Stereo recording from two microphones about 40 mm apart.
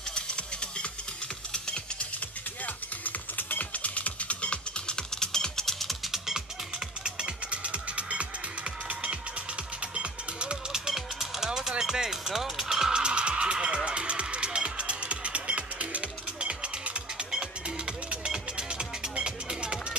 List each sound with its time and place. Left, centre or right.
0.1 s music: left
2.6 s music: left
4.8 s music: centre
6.1 s music: centre
7.2 s music: right
9.9 s music: right
10.9 s music: centre
12.9 s music: right